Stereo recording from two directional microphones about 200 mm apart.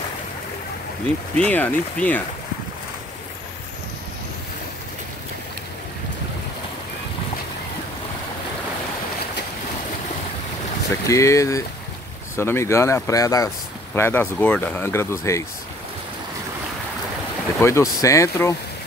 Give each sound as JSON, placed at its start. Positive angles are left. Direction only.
{"t": 1.3, "sound": "speech", "side_deg": 5}
{"t": 11.1, "sound": "speech", "side_deg": 15}
{"t": 17.6, "sound": "speech", "side_deg": 15}